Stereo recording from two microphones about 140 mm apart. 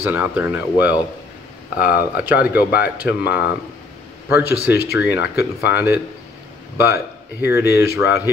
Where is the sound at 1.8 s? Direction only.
90° left.